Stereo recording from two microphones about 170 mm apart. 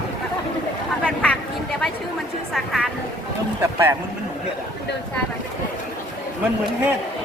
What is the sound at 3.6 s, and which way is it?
Speech, 15° right (ahead or behind).